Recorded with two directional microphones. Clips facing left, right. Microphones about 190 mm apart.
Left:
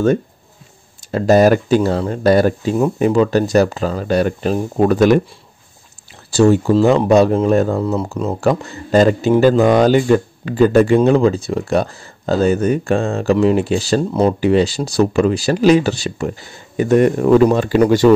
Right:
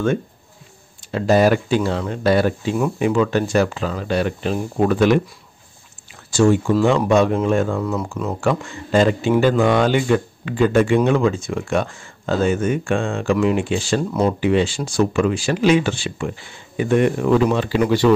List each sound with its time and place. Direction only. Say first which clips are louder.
1.1 s speech: left 4 dB; 40° left (ahead or behind)
6.3 s speech: left 4 dB; 35° left (ahead or behind)